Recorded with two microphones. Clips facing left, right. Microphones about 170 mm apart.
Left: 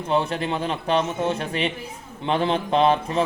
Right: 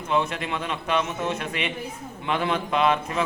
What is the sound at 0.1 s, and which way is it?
A man's voice, 30° left (ahead or behind).